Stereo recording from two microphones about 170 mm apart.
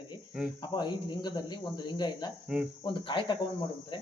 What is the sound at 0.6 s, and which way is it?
Speech, 25° left (ahead or behind).